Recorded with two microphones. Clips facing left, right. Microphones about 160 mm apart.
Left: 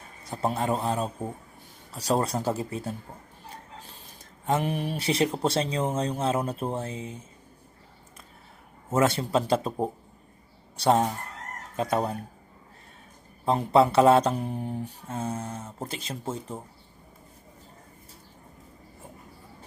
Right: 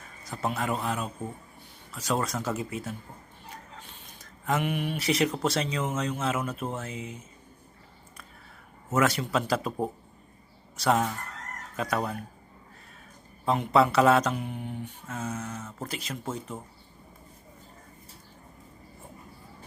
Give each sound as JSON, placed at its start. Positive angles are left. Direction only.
{"t": 0.3, "sound": "speech", "side_deg": 30}
{"t": 8.9, "sound": "speech", "side_deg": 30}
{"t": 13.4, "sound": "speech", "side_deg": 30}